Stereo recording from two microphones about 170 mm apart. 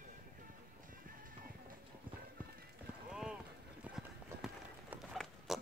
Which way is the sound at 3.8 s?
5° right (ahead or behind).